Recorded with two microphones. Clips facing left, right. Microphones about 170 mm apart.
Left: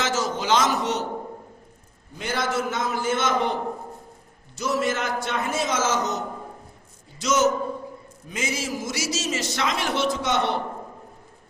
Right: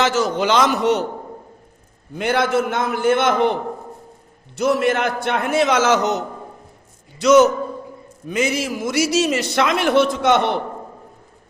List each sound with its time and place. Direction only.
0.0 s a man's voice: 65° right (ahead or behind)
2.1 s a man's voice: 60° right (ahead or behind)